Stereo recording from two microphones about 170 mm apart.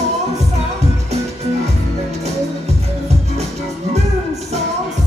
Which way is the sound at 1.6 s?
40° right (ahead or behind).